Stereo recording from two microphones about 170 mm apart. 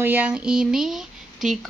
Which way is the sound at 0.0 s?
10° right (ahead or behind).